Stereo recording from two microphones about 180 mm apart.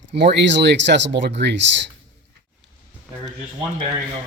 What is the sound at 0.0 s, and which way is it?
Speech, 70° right (ahead or behind).